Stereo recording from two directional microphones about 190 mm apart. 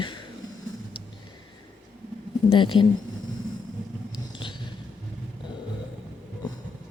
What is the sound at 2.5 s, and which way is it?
Speech, 25° left (ahead or behind).